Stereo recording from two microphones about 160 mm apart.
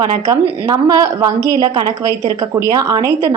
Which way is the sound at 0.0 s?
25° right (ahead or behind).